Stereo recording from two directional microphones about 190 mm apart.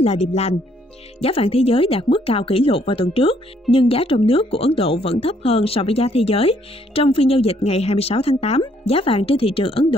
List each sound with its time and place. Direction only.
0.0 s speech: 35° left (ahead or behind)